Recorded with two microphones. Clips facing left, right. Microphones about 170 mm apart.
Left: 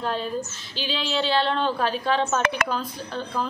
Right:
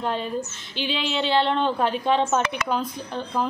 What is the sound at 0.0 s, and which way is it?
Speech, 20° right (ahead or behind).